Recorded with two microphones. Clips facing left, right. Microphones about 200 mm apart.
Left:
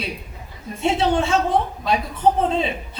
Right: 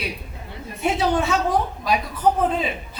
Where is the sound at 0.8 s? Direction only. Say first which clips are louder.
Left 2 dB; 25° left (ahead or behind).